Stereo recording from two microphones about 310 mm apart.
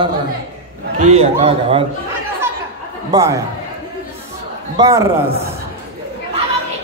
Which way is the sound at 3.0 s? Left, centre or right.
Centre.